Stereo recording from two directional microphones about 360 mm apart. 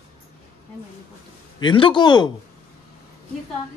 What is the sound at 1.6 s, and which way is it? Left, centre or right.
Speech, centre.